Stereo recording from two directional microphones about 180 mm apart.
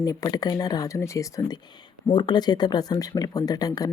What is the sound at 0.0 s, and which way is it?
A woman's voice, 20° left (ahead or behind).